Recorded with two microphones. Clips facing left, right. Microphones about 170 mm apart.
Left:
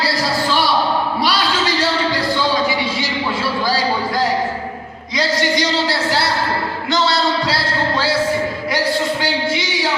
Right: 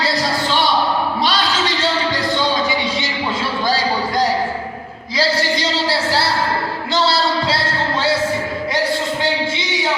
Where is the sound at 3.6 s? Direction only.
25° right (ahead or behind).